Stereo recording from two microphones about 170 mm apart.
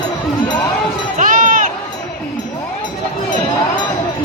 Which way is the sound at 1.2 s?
50° right (ahead or behind).